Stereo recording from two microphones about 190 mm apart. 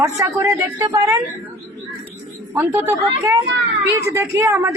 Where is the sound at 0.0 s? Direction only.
15° right (ahead or behind).